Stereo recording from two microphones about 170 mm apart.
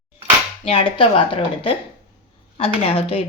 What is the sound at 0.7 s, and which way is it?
A woman's voice, 30° left (ahead or behind).